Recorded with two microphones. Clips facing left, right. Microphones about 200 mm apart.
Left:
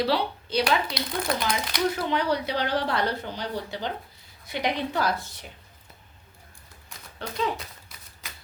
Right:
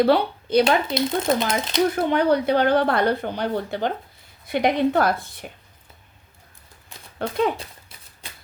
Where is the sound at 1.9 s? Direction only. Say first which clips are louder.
Right 7 dB; 55° right (ahead or behind).